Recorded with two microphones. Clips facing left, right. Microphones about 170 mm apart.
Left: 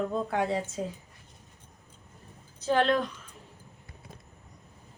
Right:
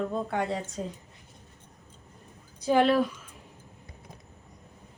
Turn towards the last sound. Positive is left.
turn(degrees=-10)  # may be behind; listen again after turning